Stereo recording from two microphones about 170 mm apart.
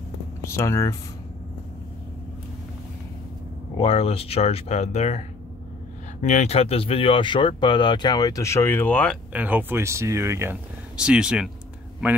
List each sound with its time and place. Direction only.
0.4 s speech: 15° left (ahead or behind)
3.7 s speech: 35° left (ahead or behind)
6.2 s speech: 40° left (ahead or behind); by 9.2 s 5° left (ahead or behind)
9.3 s speech: 10° right (ahead or behind)